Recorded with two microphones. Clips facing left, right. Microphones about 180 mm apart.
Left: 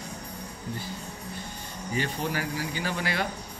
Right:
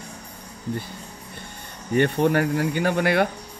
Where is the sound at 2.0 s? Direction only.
60° right (ahead or behind).